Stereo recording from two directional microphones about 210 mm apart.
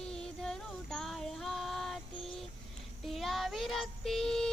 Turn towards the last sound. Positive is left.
turn(degrees=0)  # may be behind; listen again after turning